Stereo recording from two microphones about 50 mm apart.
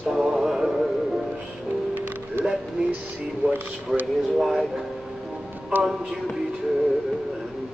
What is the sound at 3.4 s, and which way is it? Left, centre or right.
Speech, right.